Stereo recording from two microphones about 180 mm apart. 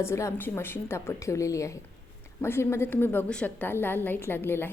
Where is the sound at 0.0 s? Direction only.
15° left (ahead or behind).